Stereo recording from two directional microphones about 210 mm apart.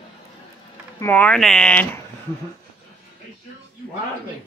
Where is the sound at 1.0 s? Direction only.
10° left (ahead or behind).